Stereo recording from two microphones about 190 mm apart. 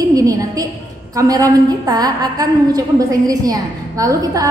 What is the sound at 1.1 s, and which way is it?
A woman's voice, 20° right (ahead or behind).